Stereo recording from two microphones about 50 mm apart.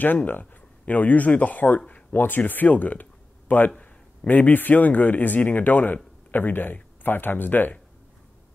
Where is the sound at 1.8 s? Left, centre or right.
Left.